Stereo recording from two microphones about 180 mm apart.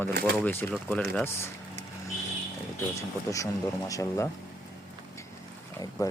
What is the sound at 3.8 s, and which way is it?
Speech, 15° left (ahead or behind).